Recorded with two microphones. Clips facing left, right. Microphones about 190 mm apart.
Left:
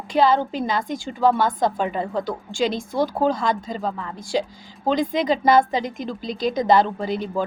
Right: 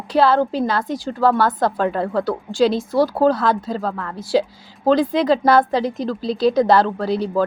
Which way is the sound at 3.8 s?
10° left (ahead or behind).